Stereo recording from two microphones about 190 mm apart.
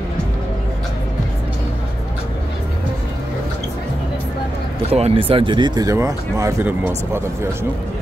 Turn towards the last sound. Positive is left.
turn(degrees=-15)  # may be behind; listen again after turning